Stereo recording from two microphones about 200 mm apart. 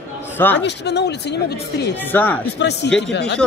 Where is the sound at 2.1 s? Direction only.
10° left (ahead or behind).